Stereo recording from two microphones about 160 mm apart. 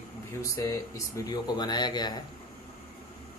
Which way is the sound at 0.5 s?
20° left (ahead or behind).